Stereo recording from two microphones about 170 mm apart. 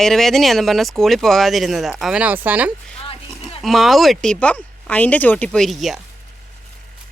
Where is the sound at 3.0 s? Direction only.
35° left (ahead or behind).